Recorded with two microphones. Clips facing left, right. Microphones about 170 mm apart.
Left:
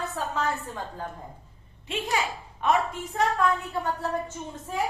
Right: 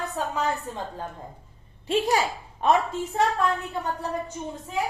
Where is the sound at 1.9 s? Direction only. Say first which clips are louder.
Right 6 dB; 35° right (ahead or behind).